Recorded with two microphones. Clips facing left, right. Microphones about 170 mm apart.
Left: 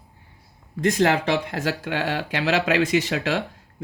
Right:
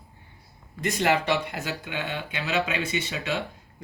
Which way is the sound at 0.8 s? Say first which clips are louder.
Left 4 dB; 90° left.